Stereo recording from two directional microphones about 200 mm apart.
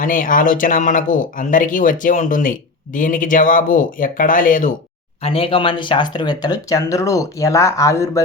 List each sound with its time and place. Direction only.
0.0 s speech: 40° left (ahead or behind)
5.2 s speech: 25° left (ahead or behind)